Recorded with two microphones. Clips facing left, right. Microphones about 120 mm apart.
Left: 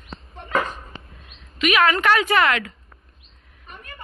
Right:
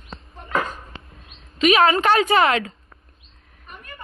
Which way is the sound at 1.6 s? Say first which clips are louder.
Right 3 dB; 30° right (ahead or behind).